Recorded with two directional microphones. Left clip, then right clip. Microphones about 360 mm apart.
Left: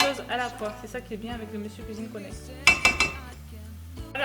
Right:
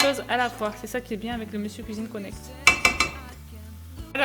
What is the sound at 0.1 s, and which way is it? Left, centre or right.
Speech, right.